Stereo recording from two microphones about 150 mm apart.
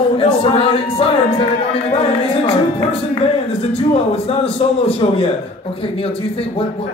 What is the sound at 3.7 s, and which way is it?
Speech, 40° left (ahead or behind).